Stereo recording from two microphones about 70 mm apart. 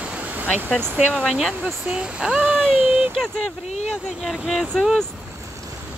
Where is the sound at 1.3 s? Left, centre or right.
Centre.